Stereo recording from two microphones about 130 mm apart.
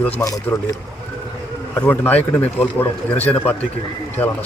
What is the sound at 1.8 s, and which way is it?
Speech, 15° left (ahead or behind).